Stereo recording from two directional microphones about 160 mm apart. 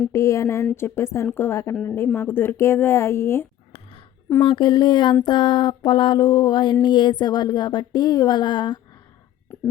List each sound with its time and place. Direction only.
0.1 s speech: 20° left (ahead or behind)
4.4 s speech: 30° left (ahead or behind)
9.5 s whispering: 15° left (ahead or behind)